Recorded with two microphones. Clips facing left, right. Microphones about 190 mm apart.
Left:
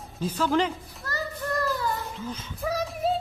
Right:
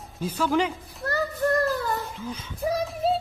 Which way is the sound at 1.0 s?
60° right (ahead or behind).